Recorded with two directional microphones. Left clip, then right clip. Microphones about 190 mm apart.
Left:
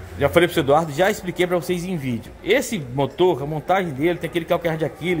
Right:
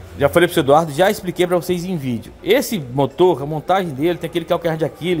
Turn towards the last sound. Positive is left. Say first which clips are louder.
# right 3 dB
turn(degrees=-20)  # may be behind; listen again after turning